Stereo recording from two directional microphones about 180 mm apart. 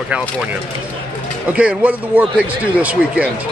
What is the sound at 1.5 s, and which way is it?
Speech, 5° right (ahead or behind).